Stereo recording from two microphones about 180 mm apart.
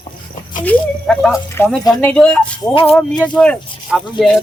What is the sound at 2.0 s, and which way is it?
Speech, 5° left (ahead or behind).